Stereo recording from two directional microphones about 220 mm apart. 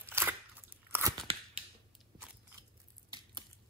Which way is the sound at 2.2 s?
15° right (ahead or behind).